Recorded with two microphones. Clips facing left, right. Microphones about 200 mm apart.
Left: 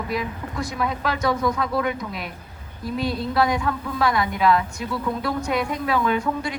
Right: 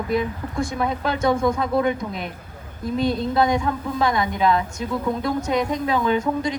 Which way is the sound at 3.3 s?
20° right (ahead or behind).